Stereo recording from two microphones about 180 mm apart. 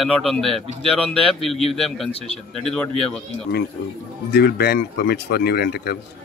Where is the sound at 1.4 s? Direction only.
Centre (ahead or behind).